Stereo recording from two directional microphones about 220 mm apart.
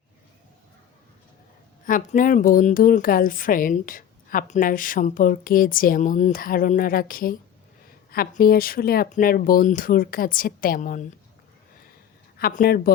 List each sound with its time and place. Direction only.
1.8 s a woman's voice: 40° left (ahead or behind)
12.4 s speech: 45° left (ahead or behind)